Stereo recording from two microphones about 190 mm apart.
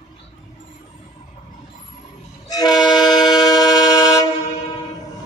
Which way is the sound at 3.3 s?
20° left (ahead or behind).